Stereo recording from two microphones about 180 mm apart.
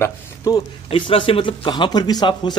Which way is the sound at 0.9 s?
30° left (ahead or behind).